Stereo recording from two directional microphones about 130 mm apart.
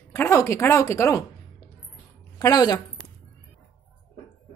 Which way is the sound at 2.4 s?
30° left (ahead or behind).